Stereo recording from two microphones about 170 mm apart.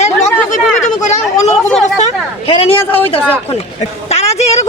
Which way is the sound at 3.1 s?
35° left (ahead or behind).